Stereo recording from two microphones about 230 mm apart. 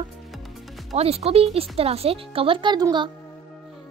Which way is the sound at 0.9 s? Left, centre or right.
Right.